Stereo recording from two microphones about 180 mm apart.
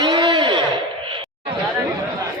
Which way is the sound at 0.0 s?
25° right (ahead or behind).